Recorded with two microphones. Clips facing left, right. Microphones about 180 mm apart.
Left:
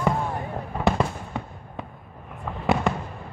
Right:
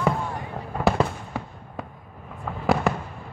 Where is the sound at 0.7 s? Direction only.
Centre (ahead or behind).